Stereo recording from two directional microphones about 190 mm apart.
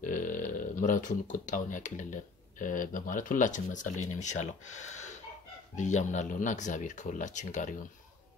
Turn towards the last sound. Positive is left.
turn(degrees=40)  # may be behind; listen again after turning